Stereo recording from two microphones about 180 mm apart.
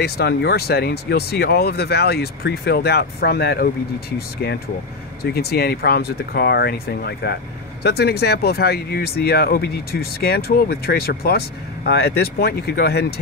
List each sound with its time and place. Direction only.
0.0 s speech: 65° left (ahead or behind)
5.2 s speech: 60° left (ahead or behind)